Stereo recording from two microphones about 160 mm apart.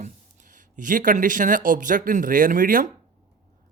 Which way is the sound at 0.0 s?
50° right (ahead or behind).